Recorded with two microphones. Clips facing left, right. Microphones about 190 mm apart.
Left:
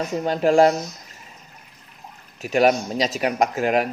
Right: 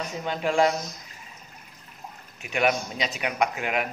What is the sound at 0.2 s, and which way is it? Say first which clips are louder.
Speech: left 7 dB; 40° left (ahead or behind).